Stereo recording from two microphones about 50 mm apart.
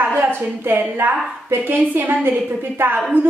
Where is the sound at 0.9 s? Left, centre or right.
Right.